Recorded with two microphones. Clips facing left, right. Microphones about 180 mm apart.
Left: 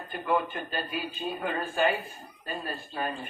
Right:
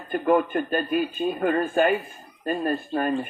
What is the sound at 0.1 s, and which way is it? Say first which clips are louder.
Speech: right 8 dB; 50° right (ahead or behind).